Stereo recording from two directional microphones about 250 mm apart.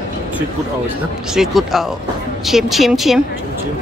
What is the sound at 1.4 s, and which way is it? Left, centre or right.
A woman's voice, centre.